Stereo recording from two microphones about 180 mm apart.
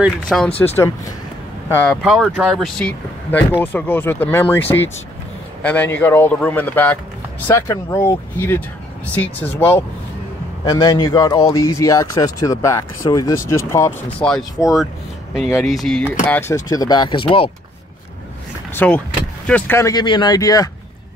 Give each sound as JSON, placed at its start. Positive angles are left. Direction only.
{"t": 0.0, "sound": "speech", "side_deg": 5}
{"t": 1.8, "sound": "speech", "side_deg": 0}
{"t": 5.6, "sound": "speech", "side_deg": 10}
{"t": 10.6, "sound": "speech", "side_deg": 20}
{"t": 16.3, "sound": "speech", "side_deg": 15}
{"t": 18.8, "sound": "speech", "side_deg": 10}